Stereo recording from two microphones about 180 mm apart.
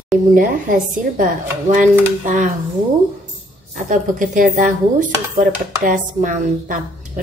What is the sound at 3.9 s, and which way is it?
Speech, 45° right (ahead or behind).